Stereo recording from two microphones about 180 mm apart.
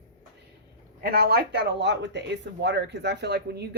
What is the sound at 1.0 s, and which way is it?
Speech, 60° right (ahead or behind).